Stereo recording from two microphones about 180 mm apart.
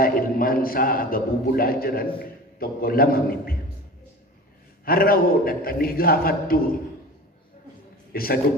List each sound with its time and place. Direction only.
0.0 s a man's voice: 55° left (ahead or behind)
4.9 s a man's voice: 55° left (ahead or behind)
8.1 s a man's voice: 55° left (ahead or behind)